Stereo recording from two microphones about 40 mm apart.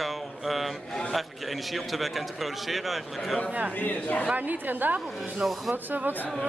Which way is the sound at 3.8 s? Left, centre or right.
Left.